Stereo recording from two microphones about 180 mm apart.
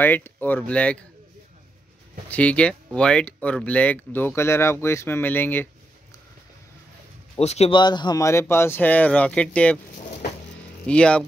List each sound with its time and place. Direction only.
0.0 s speech: 10° left (ahead or behind)
2.2 s speech: 10° left (ahead or behind)
7.3 s speech: 35° left (ahead or behind)
7.8 s speech: 25° left (ahead or behind); by 9.8 s 5° left (ahead or behind)
10.9 s speech: 5° left (ahead or behind)